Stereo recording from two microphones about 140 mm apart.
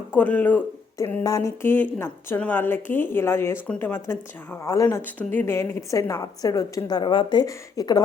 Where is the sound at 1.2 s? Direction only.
25° left (ahead or behind).